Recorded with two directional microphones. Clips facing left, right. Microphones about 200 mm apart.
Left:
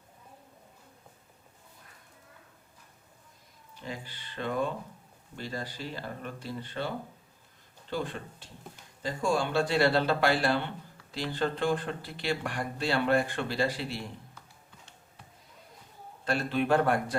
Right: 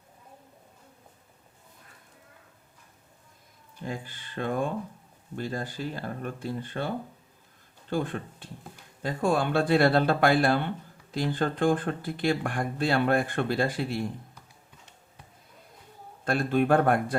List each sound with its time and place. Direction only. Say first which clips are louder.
3.8 s speech: right 4 dB; 50° right (ahead or behind)
16.2 s speech: right 4 dB; 50° right (ahead or behind)